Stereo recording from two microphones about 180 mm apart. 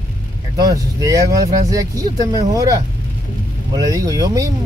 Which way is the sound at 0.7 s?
20° right (ahead or behind).